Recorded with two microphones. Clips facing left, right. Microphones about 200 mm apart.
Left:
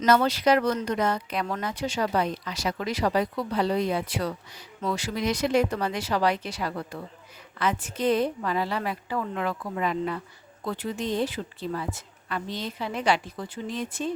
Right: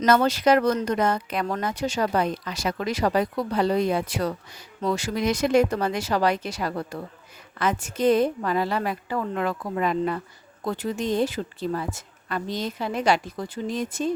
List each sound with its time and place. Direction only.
0.0 s speech: 50° right (ahead or behind)